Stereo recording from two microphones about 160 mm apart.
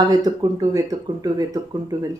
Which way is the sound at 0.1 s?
20° right (ahead or behind).